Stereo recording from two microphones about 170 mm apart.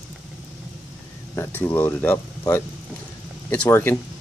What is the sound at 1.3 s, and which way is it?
Speech, 15° left (ahead or behind).